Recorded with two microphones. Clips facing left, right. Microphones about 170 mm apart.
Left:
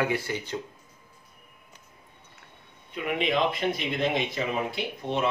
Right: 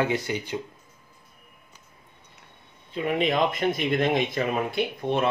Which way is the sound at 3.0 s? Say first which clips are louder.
Right 3 dB; 35° right (ahead or behind).